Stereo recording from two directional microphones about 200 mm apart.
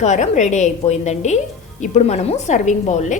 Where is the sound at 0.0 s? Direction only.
35° left (ahead or behind).